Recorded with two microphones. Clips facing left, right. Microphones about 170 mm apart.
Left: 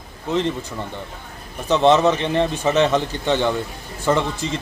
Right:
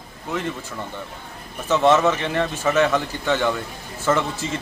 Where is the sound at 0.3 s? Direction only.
20° left (ahead or behind).